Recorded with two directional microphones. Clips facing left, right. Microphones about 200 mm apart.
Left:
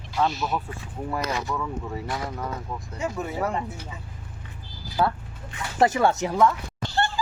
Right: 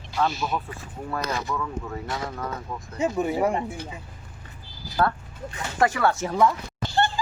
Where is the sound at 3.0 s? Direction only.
20° right (ahead or behind).